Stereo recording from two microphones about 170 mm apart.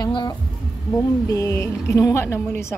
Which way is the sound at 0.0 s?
25° left (ahead or behind).